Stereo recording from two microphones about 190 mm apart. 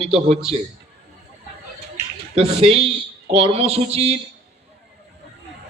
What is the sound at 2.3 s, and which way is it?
A man's voice, 30° right (ahead or behind).